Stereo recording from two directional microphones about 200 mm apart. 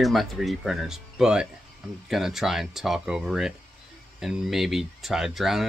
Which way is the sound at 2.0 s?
Centre (ahead or behind).